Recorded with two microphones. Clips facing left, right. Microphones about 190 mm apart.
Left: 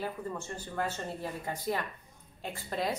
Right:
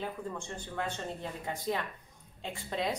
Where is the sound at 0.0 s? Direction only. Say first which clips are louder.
Left 1 dB; 5° left (ahead or behind).